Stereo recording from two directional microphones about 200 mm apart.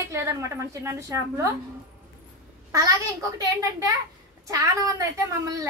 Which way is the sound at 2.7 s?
15° right (ahead or behind).